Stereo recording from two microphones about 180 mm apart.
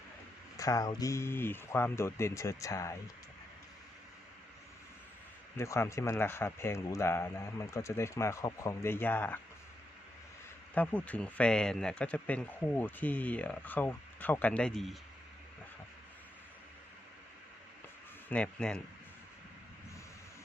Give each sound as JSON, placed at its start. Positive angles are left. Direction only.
{"t": 0.5, "sound": "speech", "side_deg": 20}
{"t": 5.5, "sound": "speech", "side_deg": 15}
{"t": 10.8, "sound": "speech", "side_deg": 10}
{"t": 18.3, "sound": "speech", "side_deg": 5}